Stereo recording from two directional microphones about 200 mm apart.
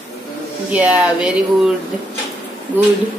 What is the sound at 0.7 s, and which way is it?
Speech, 5° right (ahead or behind).